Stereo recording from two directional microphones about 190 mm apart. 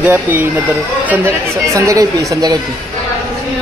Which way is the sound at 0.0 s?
10° right (ahead or behind).